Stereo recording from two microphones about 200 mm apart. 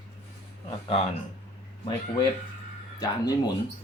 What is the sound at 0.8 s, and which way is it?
Speech, 30° left (ahead or behind).